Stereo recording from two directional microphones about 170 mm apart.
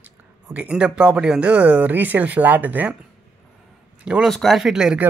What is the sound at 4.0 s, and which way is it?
Speech, 5° right (ahead or behind).